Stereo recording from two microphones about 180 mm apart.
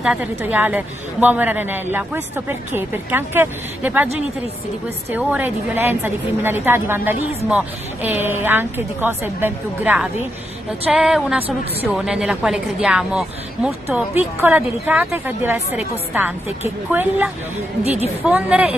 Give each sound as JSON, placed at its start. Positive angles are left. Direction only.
{"t": 0.0, "sound": "a woman's voice", "side_deg": -5}
{"t": 5.1, "sound": "a woman's voice", "side_deg": -10}